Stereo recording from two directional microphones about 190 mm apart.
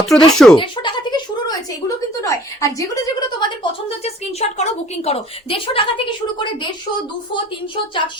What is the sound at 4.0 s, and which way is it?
A woman's voice, 35° left (ahead or behind).